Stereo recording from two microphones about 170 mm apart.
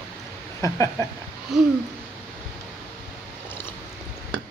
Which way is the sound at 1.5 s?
Centre (ahead or behind).